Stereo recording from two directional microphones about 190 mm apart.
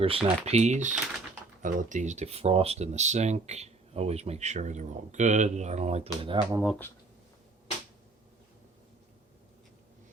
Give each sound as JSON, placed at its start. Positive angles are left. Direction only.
{"t": 0.0, "sound": "speech", "side_deg": -30}
{"t": 6.5, "sound": "speech", "side_deg": -10}